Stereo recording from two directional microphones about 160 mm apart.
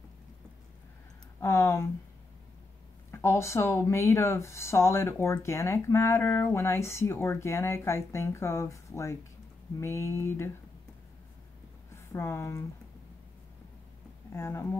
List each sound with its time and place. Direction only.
1.4 s speech: 15° left (ahead or behind)
3.1 s speech: 15° left (ahead or behind)
11.9 s a woman's voice: 15° left (ahead or behind)
14.3 s speech: 15° left (ahead or behind)